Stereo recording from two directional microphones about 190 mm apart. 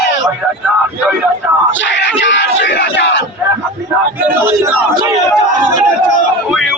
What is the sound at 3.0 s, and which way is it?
Battle cry, 70° left (ahead or behind).